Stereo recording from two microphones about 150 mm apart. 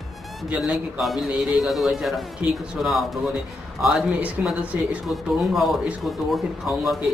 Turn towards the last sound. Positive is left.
turn(degrees=0)  # may be behind; listen again after turning